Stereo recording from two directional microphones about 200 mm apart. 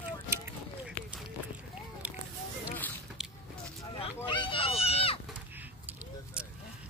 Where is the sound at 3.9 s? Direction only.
25° left (ahead or behind).